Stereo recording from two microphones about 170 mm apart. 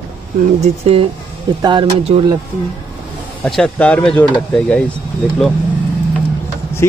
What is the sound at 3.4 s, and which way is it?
Speech, 5° left (ahead or behind).